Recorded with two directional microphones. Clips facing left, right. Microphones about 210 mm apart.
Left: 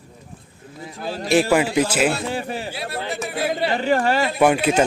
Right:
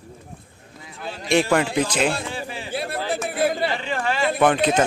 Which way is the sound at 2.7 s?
50° right (ahead or behind).